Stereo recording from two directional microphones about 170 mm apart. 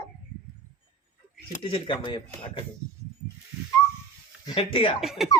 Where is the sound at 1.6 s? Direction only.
30° left (ahead or behind).